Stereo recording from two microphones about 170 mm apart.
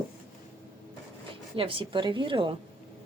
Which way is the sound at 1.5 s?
30° right (ahead or behind).